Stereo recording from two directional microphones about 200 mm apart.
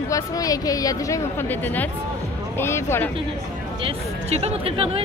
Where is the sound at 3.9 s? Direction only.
30° right (ahead or behind).